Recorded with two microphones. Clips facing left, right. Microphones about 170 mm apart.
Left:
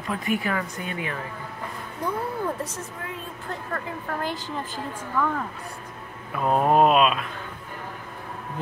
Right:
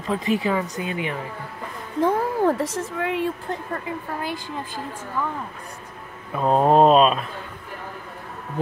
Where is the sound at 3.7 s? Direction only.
10° right (ahead or behind).